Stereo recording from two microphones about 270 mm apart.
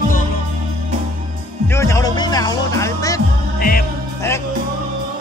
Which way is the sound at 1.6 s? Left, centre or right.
Centre.